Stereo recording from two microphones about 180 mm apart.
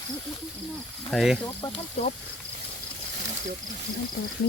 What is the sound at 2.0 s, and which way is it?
Speech, 40° left (ahead or behind).